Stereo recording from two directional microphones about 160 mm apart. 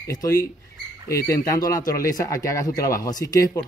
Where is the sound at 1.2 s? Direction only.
20° left (ahead or behind).